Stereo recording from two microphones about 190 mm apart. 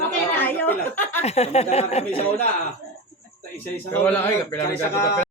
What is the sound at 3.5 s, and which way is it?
A man's voice, 10° left (ahead or behind).